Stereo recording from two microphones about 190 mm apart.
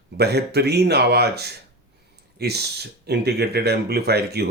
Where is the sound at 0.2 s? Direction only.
60° right (ahead or behind).